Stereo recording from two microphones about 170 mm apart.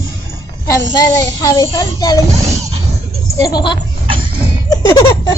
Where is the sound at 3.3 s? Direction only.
25° left (ahead or behind).